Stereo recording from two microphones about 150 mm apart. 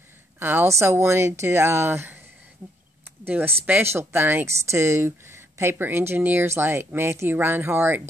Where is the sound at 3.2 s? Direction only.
15° right (ahead or behind).